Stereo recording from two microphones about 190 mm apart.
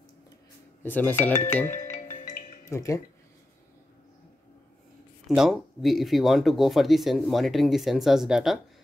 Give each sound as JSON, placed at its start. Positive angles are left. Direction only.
{"t": 0.8, "sound": "speech", "side_deg": 10}
{"t": 1.3, "sound": "speech", "side_deg": 35}
{"t": 1.8, "sound": "music", "side_deg": 40}
{"t": 2.7, "sound": "speech", "side_deg": 15}
{"t": 5.3, "sound": "speech", "side_deg": 0}